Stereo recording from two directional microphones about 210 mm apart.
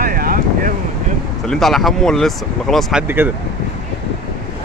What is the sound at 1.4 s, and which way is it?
Speech, centre (ahead or behind).